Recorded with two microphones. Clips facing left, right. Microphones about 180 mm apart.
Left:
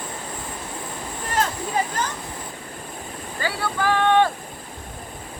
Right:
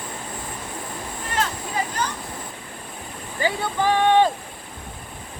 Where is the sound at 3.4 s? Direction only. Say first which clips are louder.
Right 2 dB; 20° right (ahead or behind).